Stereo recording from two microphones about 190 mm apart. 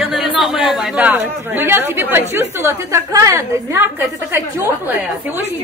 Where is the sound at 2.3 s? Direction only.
10° right (ahead or behind).